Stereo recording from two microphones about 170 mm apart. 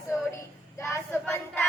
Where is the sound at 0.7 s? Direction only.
15° left (ahead or behind).